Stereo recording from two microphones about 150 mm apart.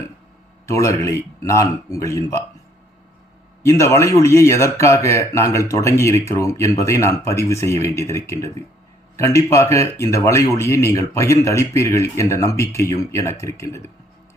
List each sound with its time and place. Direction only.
0.7 s a man's voice: 20° left (ahead or behind)
3.7 s a man's voice: 20° left (ahead or behind)